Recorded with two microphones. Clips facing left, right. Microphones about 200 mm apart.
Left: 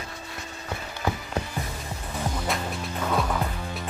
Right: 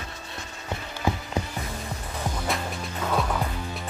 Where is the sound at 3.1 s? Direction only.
Centre (ahead or behind).